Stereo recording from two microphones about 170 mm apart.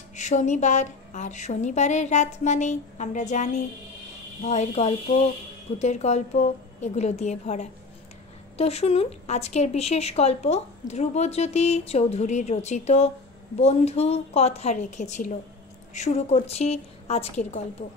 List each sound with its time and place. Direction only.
0.1 s a woman's voice: 45° left (ahead or behind)